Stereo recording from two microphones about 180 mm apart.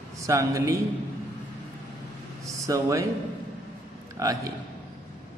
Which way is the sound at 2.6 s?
15° right (ahead or behind).